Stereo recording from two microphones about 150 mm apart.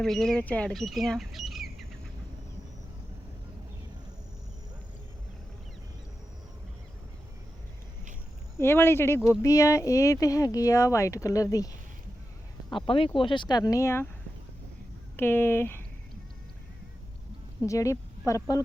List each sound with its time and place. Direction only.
0.0 s speech: centre (ahead or behind)
8.5 s speech: 15° left (ahead or behind)
12.7 s speech: 35° left (ahead or behind); by 14.1 s 15° left (ahead or behind)
15.1 s speech: 15° left (ahead or behind)
17.7 s speech: 20° left (ahead or behind)